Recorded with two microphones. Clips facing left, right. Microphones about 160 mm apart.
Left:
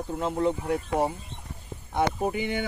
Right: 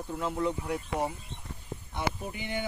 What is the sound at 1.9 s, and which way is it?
Speech, 55° left (ahead or behind).